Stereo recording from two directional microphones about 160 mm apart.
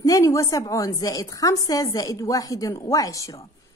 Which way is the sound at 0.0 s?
20° left (ahead or behind).